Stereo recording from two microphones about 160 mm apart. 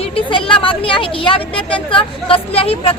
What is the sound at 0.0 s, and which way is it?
Speech, 35° left (ahead or behind).